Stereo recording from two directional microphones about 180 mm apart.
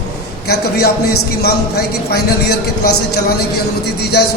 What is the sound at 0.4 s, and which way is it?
A man's voice, 60° left (ahead or behind).